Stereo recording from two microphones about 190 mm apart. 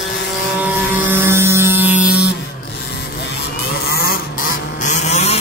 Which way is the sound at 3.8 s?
55° left (ahead or behind).